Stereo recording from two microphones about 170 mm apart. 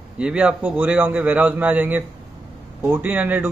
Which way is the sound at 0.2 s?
5° right (ahead or behind).